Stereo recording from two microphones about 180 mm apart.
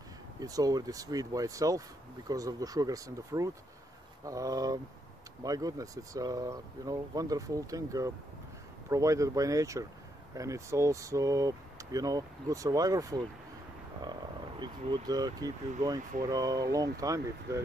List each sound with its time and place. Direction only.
0.4 s speech: 20° right (ahead or behind)
14.6 s speech: 25° right (ahead or behind)